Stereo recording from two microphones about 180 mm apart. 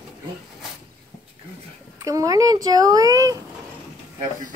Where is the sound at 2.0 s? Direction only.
20° right (ahead or behind).